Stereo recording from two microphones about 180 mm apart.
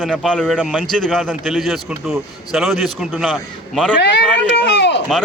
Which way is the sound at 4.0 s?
70° left (ahead or behind).